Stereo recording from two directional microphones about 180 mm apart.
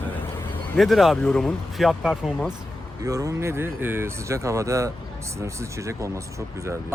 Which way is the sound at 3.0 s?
20° right (ahead or behind).